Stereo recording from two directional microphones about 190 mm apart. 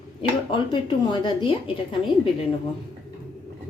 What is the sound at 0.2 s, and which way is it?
A woman's voice, 25° left (ahead or behind).